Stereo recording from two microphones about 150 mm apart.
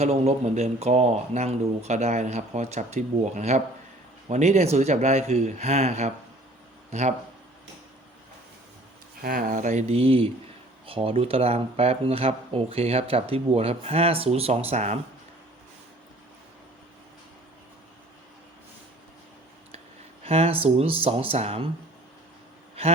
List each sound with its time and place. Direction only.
0.0 s speech: 45° right (ahead or behind)
9.2 s speech: 70° right (ahead or behind)
9.9 s speech: 40° right (ahead or behind)
20.2 s speech: 40° right (ahead or behind)